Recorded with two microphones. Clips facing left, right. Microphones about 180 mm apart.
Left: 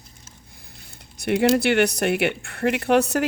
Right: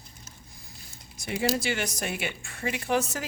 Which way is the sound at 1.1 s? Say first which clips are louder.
Left 9 dB; 65° left (ahead or behind).